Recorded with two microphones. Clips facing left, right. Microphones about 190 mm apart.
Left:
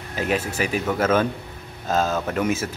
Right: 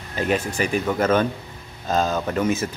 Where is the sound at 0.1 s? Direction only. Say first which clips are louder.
Right 1 dB; 5° left (ahead or behind).